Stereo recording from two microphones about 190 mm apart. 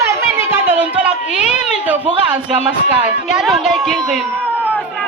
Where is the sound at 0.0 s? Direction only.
10° right (ahead or behind).